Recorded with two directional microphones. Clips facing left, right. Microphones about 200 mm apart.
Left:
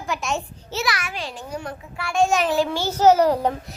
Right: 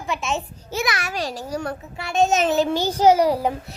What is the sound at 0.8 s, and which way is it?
Speech, 20° right (ahead or behind).